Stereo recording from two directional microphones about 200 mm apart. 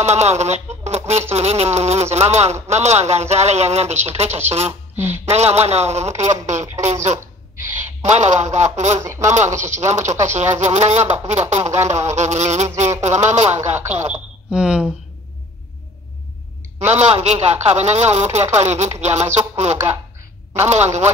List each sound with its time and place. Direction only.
0.0 s a man's voice: 35° right (ahead or behind)
4.9 s speech: 10° right (ahead or behind)
5.2 s a man's voice: 35° right (ahead or behind)
14.1 s speech: 5° right (ahead or behind)
16.8 s a man's voice: 35° right (ahead or behind)